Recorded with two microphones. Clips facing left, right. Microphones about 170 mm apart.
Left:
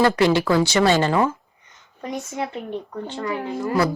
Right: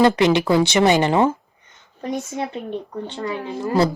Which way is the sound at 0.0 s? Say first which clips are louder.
Right 2 dB; 20° right (ahead or behind).